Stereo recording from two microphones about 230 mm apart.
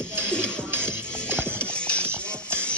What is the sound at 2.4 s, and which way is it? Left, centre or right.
Music, centre.